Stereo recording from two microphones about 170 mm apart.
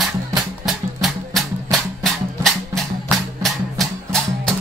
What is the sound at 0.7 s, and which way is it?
Music, centre (ahead or behind).